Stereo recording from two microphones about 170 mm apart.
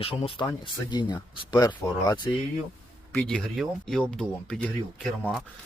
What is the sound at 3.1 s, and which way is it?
Speech, 5° left (ahead or behind).